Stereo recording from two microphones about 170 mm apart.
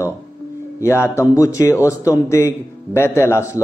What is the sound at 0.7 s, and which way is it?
Speech, 15° left (ahead or behind).